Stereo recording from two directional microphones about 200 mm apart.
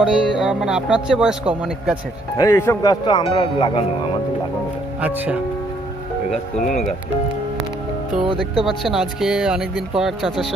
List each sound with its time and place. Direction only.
0.0 s a man's voice: 5° right (ahead or behind)
2.3 s speech: 15° left (ahead or behind)
5.0 s speech: 10° right (ahead or behind)
8.6 s a man's voice: centre (ahead or behind)